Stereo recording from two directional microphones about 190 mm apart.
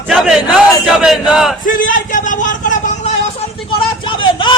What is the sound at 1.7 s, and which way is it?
Speech, 45° left (ahead or behind).